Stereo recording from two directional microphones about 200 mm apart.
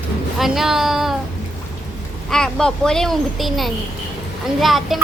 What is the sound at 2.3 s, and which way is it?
A woman's voice, 5° left (ahead or behind).